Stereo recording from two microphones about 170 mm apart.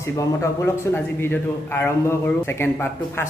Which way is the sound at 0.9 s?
10° left (ahead or behind).